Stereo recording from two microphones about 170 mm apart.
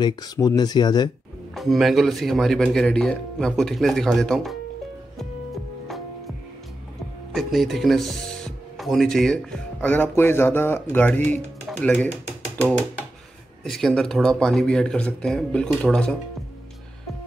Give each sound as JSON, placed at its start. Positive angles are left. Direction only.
{"t": 0.0, "sound": "speech", "side_deg": 20}
{"t": 1.5, "sound": "speech", "side_deg": 0}
{"t": 5.9, "sound": "music", "side_deg": 0}
{"t": 7.3, "sound": "speech", "side_deg": 0}
{"t": 13.7, "sound": "speech", "side_deg": 0}